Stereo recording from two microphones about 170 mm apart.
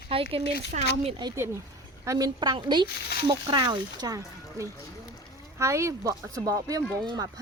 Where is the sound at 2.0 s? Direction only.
20° right (ahead or behind).